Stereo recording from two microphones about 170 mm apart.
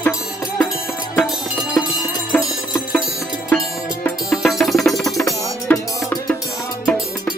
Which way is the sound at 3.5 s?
10° left (ahead or behind).